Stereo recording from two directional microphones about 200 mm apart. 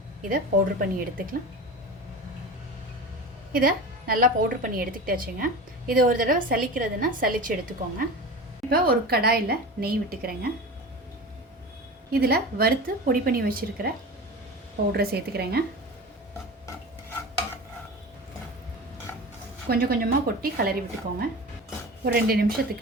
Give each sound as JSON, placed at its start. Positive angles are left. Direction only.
{"t": 0.3, "sound": "a woman's voice", "side_deg": -45}
{"t": 3.5, "sound": "a woman's voice", "side_deg": -45}
{"t": 8.7, "sound": "a woman's voice", "side_deg": -50}
{"t": 12.1, "sound": "a woman's voice", "side_deg": -50}
{"t": 14.9, "sound": "a woman's voice", "side_deg": -50}
{"t": 19.6, "sound": "a woman's voice", "side_deg": -50}